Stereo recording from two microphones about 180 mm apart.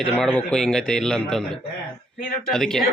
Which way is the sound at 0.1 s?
5° left (ahead or behind).